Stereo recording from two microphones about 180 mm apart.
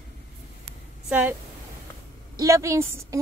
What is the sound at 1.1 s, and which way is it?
Speech, 10° right (ahead or behind).